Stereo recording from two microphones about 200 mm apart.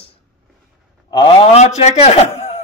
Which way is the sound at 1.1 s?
25° left (ahead or behind).